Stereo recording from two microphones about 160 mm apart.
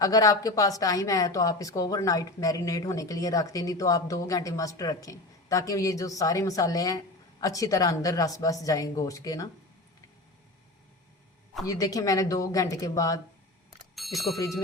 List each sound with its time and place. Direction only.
0.0 s speech: 20° left (ahead or behind)
11.6 s speech: 20° left (ahead or behind)
13.9 s bicycle bell: centre (ahead or behind)